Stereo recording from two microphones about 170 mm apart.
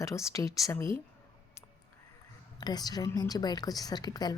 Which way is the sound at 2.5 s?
25° left (ahead or behind).